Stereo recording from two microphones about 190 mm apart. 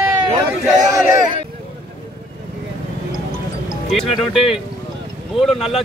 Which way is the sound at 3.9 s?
Centre (ahead or behind).